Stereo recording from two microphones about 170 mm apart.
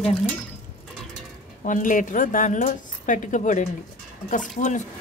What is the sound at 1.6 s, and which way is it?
A woman's voice, 50° left (ahead or behind).